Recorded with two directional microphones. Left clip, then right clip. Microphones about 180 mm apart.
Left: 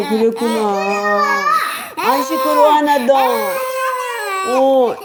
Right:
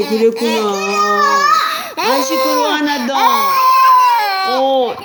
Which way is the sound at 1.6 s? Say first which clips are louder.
Right 3 dB; 5° left (ahead or behind).